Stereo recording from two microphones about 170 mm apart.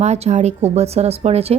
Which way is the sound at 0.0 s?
40° right (ahead or behind).